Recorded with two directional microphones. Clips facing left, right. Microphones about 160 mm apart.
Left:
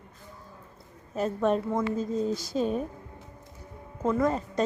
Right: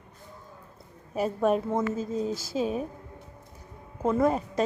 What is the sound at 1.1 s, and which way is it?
A woman's voice, 10° right (ahead or behind).